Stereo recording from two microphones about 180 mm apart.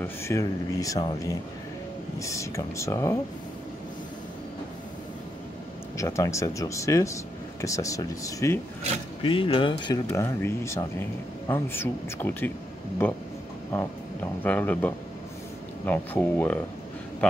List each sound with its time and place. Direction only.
0.0 s speech: 15° left (ahead or behind)
5.9 s speech: 15° left (ahead or behind)
9.2 s speech: 30° left (ahead or behind); by 13.2 s 10° left (ahead or behind)
14.4 s speech: 10° left (ahead or behind)